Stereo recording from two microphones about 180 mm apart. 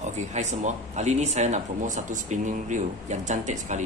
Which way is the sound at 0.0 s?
40° right (ahead or behind).